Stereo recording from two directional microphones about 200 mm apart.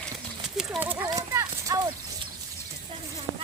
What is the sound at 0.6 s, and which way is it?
Clip-clop, 5° right (ahead or behind).